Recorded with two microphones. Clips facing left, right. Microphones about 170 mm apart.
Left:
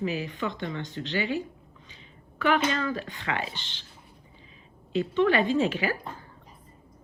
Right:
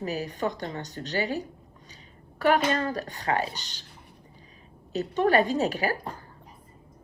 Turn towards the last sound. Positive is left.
turn(degrees=-40)  # may be behind; listen again after turning